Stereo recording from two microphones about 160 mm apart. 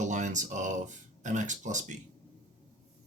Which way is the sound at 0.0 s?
50° right (ahead or behind).